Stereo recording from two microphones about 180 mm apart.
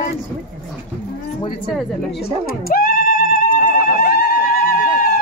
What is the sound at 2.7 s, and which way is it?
Music, 50° left (ahead or behind).